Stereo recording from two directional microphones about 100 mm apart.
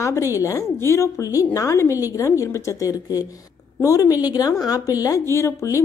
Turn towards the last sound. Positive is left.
turn(degrees=30)  # may be behind; listen again after turning